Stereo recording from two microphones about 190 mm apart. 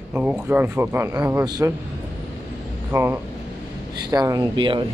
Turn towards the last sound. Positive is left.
turn(degrees=-25)  # may be behind; listen again after turning